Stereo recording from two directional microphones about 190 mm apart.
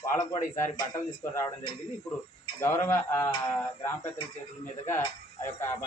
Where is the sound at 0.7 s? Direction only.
20° left (ahead or behind).